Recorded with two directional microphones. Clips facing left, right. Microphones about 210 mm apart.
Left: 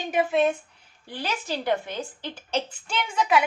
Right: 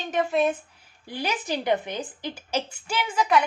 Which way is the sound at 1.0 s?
15° right (ahead or behind).